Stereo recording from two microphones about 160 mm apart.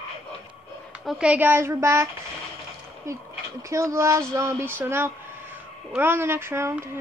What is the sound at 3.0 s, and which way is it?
A woman's voice, 20° right (ahead or behind).